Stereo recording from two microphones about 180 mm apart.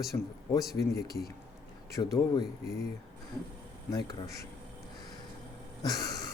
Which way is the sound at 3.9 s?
20° left (ahead or behind).